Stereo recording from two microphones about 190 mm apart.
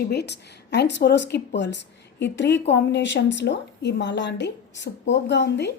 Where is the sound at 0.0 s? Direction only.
60° left (ahead or behind).